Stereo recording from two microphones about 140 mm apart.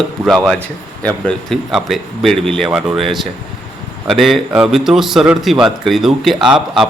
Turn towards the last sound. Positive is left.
turn(degrees=-5)  # may be behind; listen again after turning